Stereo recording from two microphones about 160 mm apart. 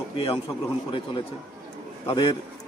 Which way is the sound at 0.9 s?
30° left (ahead or behind).